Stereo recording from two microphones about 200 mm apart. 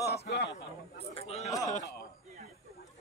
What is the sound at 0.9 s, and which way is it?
Speech, 30° left (ahead or behind).